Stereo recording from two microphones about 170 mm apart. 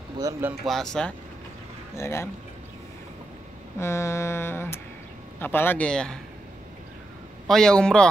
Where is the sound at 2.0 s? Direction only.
15° left (ahead or behind).